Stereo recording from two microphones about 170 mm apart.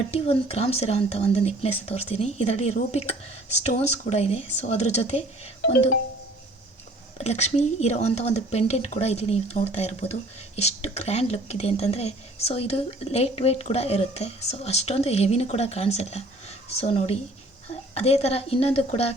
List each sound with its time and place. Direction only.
0.1 s speech: 35° left (ahead or behind)
7.3 s speech: 40° left (ahead or behind)